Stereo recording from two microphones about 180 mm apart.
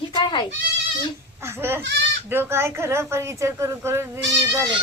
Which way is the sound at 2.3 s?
15° right (ahead or behind).